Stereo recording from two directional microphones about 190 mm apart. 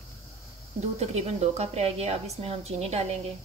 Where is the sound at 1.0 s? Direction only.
35° right (ahead or behind).